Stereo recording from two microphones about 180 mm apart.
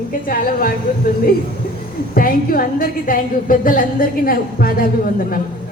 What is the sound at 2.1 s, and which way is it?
A woman's voice, 55° left (ahead or behind).